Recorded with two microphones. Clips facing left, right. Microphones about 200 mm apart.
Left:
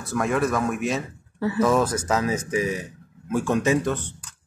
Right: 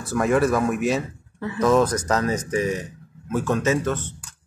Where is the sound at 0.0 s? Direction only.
Centre (ahead or behind).